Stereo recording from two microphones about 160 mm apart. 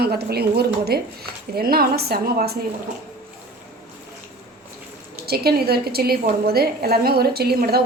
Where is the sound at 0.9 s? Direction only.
75° right (ahead or behind).